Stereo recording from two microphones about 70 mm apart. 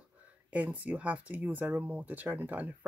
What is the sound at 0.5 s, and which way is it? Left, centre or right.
Speech, right.